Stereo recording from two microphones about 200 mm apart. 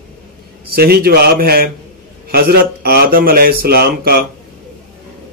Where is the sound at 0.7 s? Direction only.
50° right (ahead or behind).